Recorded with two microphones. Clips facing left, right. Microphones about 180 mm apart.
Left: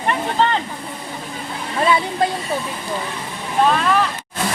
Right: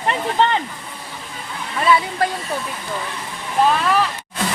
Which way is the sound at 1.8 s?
25° left (ahead or behind).